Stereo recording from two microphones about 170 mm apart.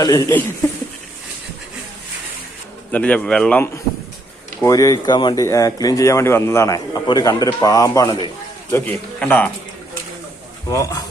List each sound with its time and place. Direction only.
0.0 s a man's voice: 20° left (ahead or behind)
2.9 s a man's voice: 10° left (ahead or behind)
4.6 s speech: 20° left (ahead or behind)
8.7 s a man's voice: 10° left (ahead or behind)
10.7 s a man's voice: 20° left (ahead or behind)